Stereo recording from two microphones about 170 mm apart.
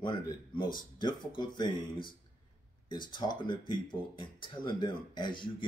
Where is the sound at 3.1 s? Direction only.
25° left (ahead or behind).